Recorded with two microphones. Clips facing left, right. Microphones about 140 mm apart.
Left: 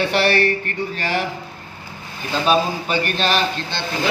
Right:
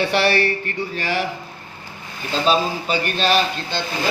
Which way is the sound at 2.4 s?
50° left (ahead or behind).